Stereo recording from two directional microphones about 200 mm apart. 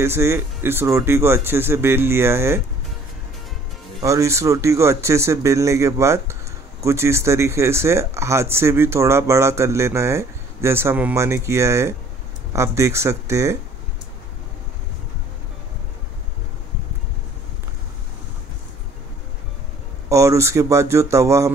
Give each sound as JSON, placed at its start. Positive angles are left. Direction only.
{"t": 0.0, "sound": "speech", "side_deg": -15}
{"t": 4.0, "sound": "speech", "side_deg": -15}
{"t": 20.1, "sound": "speech", "side_deg": -15}